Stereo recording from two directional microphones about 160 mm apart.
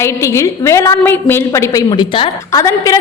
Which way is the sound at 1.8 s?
30° left (ahead or behind).